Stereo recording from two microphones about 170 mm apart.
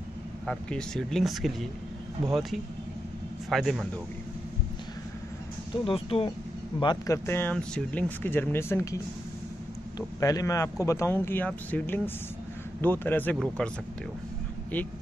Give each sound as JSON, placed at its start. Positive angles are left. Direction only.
{"t": 0.5, "sound": "speech", "side_deg": 5}
{"t": 5.9, "sound": "a man's voice", "side_deg": 35}
{"t": 7.2, "sound": "a man's voice", "side_deg": 10}